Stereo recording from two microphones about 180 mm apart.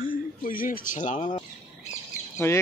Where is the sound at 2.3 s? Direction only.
15° left (ahead or behind).